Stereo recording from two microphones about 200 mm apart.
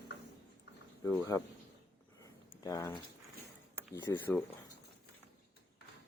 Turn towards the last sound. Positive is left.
turn(degrees=10)  # may be behind; listen again after turning